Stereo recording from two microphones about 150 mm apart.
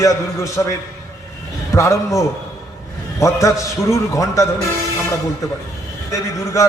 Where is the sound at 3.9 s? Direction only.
20° left (ahead or behind).